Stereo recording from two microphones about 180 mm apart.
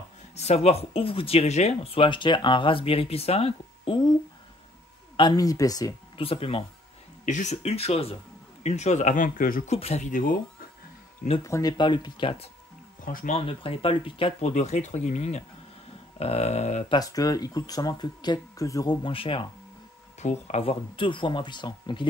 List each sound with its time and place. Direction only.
0.4 s speech: 35° left (ahead or behind)
5.1 s speech: 25° left (ahead or behind); by 9.8 s 50° left (ahead or behind)
9.8 s speech: 35° left (ahead or behind)
11.4 s speech: 20° left (ahead or behind)
13.0 s speech: 50° left (ahead or behind)
13.4 s speech: 30° left (ahead or behind)
14.5 s speech: 40° left (ahead or behind)
17.0 s speech: 20° left (ahead or behind)